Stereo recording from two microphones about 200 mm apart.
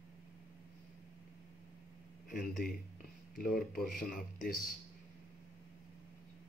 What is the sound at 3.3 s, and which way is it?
Speech, 45° left (ahead or behind).